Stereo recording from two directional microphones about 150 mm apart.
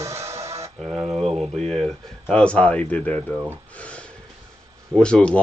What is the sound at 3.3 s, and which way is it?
Speech, 10° right (ahead or behind).